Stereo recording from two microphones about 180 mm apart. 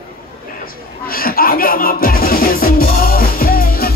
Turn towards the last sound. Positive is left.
turn(degrees=55)  # may be behind; listen again after turning